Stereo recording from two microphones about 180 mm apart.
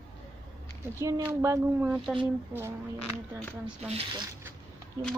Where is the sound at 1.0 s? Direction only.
15° right (ahead or behind).